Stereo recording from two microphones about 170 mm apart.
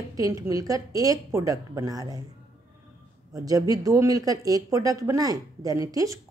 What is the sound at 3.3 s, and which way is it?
A woman's voice, 20° right (ahead or behind).